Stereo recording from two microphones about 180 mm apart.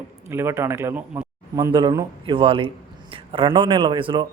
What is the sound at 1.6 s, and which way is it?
A man's voice, 20° right (ahead or behind).